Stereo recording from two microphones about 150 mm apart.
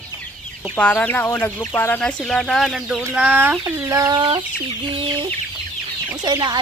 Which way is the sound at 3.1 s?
10° right (ahead or behind).